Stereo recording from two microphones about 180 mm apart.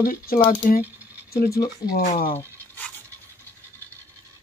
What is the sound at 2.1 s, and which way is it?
Speech, 30° left (ahead or behind).